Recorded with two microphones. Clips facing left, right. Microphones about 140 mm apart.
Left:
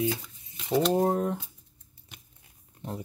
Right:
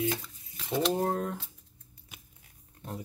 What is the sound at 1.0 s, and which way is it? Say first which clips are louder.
Speech: left 5 dB; 20° left (ahead or behind).